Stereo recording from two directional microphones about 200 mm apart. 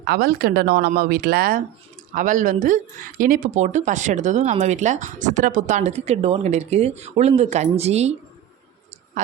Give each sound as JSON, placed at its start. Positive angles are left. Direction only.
{"t": 0.0, "sound": "speech", "side_deg": -50}